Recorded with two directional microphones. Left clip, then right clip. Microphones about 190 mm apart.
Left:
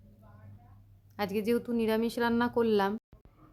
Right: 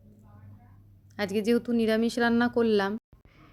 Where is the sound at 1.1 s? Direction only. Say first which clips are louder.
Right 4 dB; 15° right (ahead or behind).